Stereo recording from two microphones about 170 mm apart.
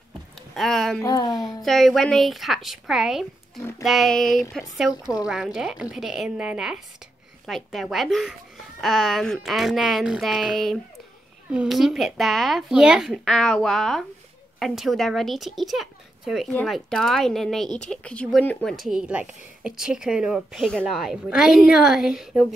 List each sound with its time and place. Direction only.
0.6 s speech: centre (ahead or behind)
1.0 s speech: 25° left (ahead or behind)
1.6 s speech: centre (ahead or behind)